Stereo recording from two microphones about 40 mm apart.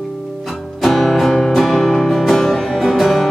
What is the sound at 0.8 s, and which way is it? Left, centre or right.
Music, centre.